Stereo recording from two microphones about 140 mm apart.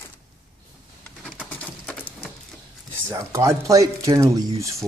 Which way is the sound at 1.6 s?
10° left (ahead or behind).